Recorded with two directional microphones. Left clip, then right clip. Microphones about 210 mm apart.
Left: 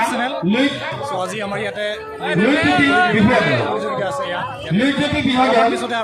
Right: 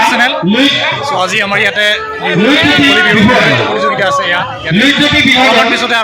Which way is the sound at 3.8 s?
5° right (ahead or behind).